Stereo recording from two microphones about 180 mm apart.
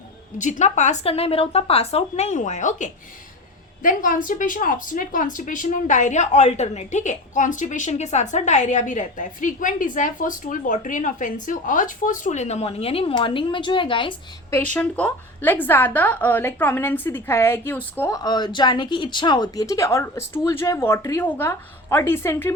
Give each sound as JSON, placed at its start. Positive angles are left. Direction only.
{"t": 0.3, "sound": "speech", "side_deg": 40}
{"t": 14.5, "sound": "a woman's voice", "side_deg": 10}